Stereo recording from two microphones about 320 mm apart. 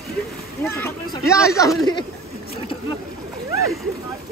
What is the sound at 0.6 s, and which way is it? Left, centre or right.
Speech, centre.